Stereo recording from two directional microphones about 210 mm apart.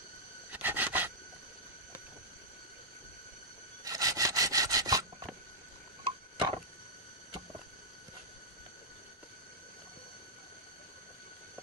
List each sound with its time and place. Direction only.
0.5 s filing: 10° right (ahead or behind)
3.8 s sawing: 15° right (ahead or behind)
6.0 s a sound: 25° right (ahead or behind)